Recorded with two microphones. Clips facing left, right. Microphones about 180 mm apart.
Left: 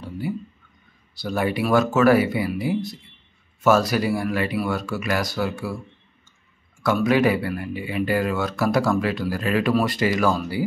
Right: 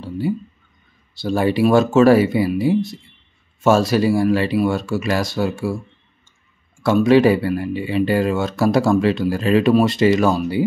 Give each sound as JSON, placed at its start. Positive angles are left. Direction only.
{"t": 1.1, "sound": "speech", "side_deg": -25}
{"t": 6.8, "sound": "speech", "side_deg": -25}